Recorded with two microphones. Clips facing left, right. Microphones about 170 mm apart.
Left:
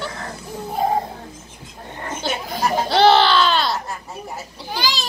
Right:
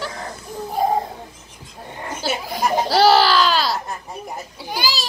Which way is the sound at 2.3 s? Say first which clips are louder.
Right 1 dB; 5° right (ahead or behind).